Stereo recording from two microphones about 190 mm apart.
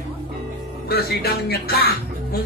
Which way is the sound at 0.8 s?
55° left (ahead or behind).